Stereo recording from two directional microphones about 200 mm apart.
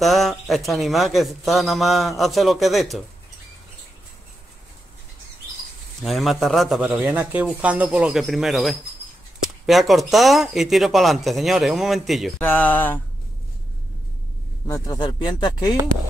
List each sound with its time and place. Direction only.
0.0 s speech: centre (ahead or behind)
6.0 s speech: centre (ahead or behind)
14.7 s speech: 20° left (ahead or behind)